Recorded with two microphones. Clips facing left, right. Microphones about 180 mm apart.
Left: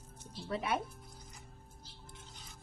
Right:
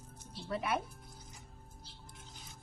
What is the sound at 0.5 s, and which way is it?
Speech, 25° left (ahead or behind).